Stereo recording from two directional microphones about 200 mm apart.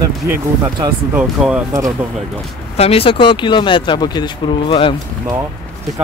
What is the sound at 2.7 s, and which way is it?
Speech, 30° left (ahead or behind).